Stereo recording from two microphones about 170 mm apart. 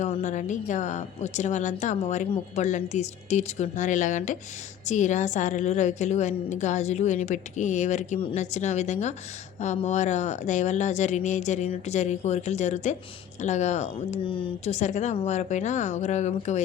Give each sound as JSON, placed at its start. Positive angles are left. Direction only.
{"t": 0.0, "sound": "a woman's voice", "side_deg": 45}